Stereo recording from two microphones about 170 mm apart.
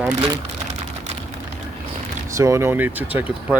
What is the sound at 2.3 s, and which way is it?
Speech, 15° right (ahead or behind).